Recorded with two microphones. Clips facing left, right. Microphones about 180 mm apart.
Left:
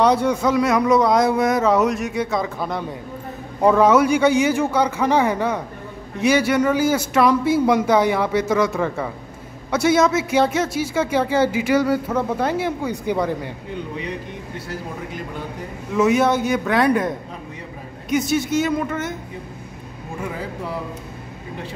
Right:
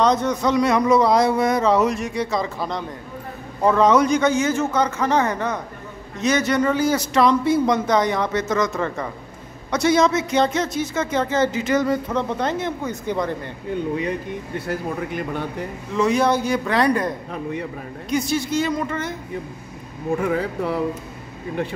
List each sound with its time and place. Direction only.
0.0 s a man's voice: 10° left (ahead or behind)
15.9 s a man's voice: 5° left (ahead or behind)
18.4 s a man's voice: 5° left (ahead or behind)
20.2 s speech: 65° right (ahead or behind)